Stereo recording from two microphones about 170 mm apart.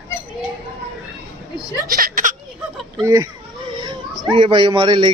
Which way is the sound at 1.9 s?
55° right (ahead or behind).